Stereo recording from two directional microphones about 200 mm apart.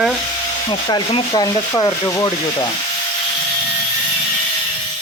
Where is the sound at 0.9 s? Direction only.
25° left (ahead or behind).